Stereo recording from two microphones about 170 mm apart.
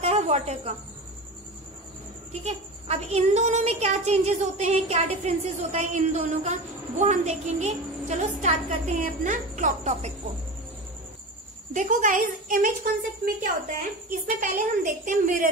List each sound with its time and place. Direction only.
0.0 s cricket: 40° right (ahead or behind)
2.4 s speech: 40° right (ahead or behind)
11.7 s a woman's voice: 50° right (ahead or behind)